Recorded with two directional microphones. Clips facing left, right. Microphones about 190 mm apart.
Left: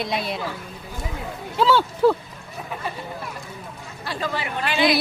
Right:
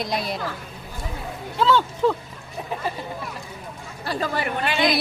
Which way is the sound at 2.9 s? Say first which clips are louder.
Right 2 dB; 35° right (ahead or behind).